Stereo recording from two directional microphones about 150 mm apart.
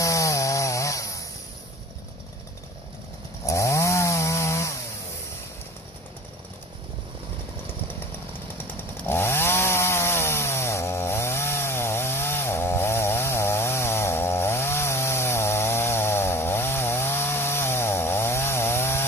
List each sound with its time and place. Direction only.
0.0 s chainsaw: 20° left (ahead or behind)
3.4 s chainsaw: 20° left (ahead or behind)
8.5 s chainsaw: 15° left (ahead or behind)